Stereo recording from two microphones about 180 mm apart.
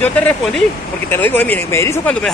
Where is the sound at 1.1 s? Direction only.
10° left (ahead or behind).